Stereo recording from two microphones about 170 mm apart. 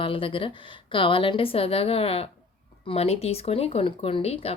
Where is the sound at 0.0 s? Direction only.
30° left (ahead or behind).